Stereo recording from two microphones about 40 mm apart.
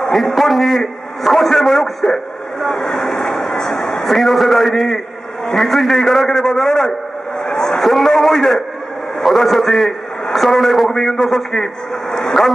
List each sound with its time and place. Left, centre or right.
0.1 s a man's voice: centre
7.4 s a sound: centre
7.8 s a man's voice: centre